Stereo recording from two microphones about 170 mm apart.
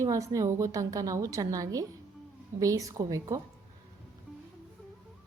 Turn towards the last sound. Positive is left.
turn(degrees=-20)  # may be behind; listen again after turning